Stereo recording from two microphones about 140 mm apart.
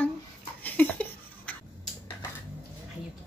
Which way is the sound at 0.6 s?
10° left (ahead or behind).